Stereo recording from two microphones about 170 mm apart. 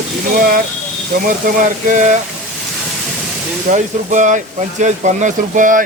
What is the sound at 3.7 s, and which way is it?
Speech, 45° right (ahead or behind).